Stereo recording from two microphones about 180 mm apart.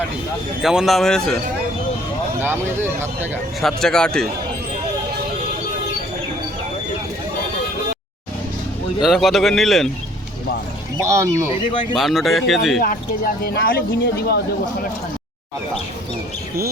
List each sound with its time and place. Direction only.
0.6 s a man's voice: 5° right (ahead or behind)
2.4 s speech: 10° right (ahead or behind)
3.6 s a man's voice: centre (ahead or behind)
9.0 s a man's voice: centre (ahead or behind)
11.0 s speech: 15° right (ahead or behind)
11.9 s a man's voice: centre (ahead or behind)
13.4 s speech: 55° left (ahead or behind)